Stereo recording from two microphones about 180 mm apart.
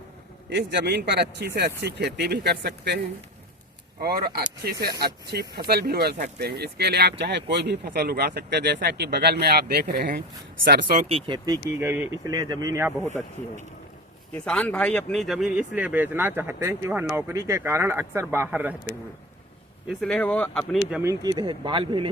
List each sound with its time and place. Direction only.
0.5 s a man's voice: 70° right (ahead or behind)
4.0 s speech: 55° right (ahead or behind)
10.2 s speech: 70° right (ahead or behind)
11.3 s speech: 20° right (ahead or behind)
14.3 s speech: 5° left (ahead or behind); by 18.7 s 10° right (ahead or behind)
19.9 s speech: 5° left (ahead or behind)
20.9 s speech: 15° right (ahead or behind)